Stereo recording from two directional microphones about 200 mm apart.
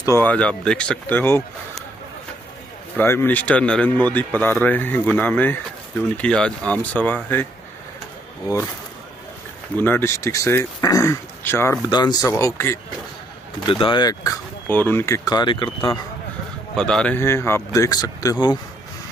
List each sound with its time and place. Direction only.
0.0 s speech: 10° left (ahead or behind)
3.0 s speech: 10° left (ahead or behind)
9.8 s speech: 10° left (ahead or behind)
16.7 s speech: 5° left (ahead or behind); by 18.6 s 20° left (ahead or behind)